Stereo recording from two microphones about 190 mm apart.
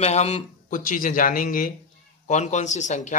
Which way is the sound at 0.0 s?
35° left (ahead or behind).